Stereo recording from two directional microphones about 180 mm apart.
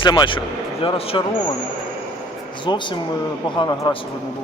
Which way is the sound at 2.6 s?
25° left (ahead or behind).